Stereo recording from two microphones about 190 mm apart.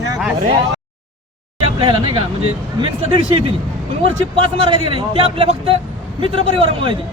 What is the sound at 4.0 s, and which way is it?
A man's voice, 25° right (ahead or behind).